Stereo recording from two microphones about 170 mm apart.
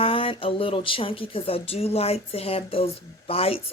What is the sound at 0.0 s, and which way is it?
Speech, 30° left (ahead or behind).